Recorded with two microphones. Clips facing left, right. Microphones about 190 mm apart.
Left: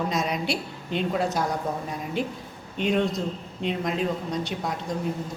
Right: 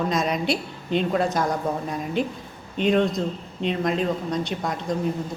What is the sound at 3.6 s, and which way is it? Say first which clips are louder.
Speech: right 3 dB; 5° left (ahead or behind).